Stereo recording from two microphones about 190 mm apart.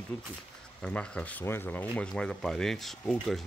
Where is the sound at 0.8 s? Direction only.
5° left (ahead or behind).